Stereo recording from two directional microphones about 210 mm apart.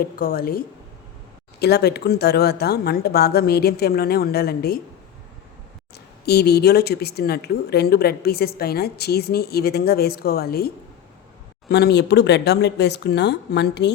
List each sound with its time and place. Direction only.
0.0 s speech: 45° left (ahead or behind)
6.2 s speech: 50° left (ahead or behind)
11.7 s speech: 50° left (ahead or behind)